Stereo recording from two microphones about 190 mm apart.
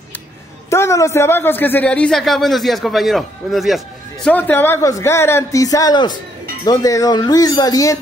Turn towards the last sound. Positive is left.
turn(degrees=20)  # may be behind; listen again after turning